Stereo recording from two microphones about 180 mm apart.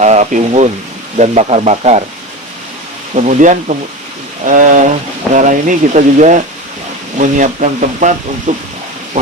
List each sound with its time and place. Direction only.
0.0 s speech: 40° right (ahead or behind)
3.2 s speech: 45° right (ahead or behind)
9.2 s a sound: 45° right (ahead or behind)